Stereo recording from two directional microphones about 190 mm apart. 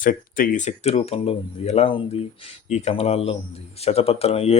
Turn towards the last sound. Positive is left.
turn(degrees=35)  # may be behind; listen again after turning